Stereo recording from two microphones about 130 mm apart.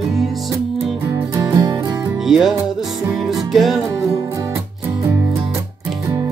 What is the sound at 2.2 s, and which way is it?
Music, centre (ahead or behind).